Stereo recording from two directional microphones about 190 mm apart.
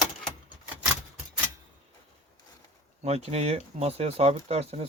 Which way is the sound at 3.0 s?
35° right (ahead or behind).